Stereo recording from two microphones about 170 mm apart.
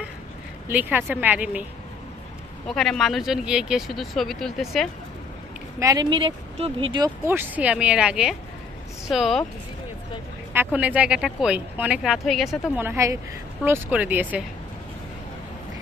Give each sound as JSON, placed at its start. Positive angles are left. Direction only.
{"t": 0.7, "sound": "speech", "side_deg": -10}
{"t": 2.7, "sound": "speech", "side_deg": 0}
{"t": 5.8, "sound": "speech", "side_deg": -20}
{"t": 7.0, "sound": "speech", "side_deg": -10}
{"t": 10.5, "sound": "speech", "side_deg": -10}
{"t": 12.7, "sound": "speech", "side_deg": -15}